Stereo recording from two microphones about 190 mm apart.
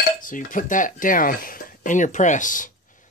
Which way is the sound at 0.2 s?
45° left (ahead or behind).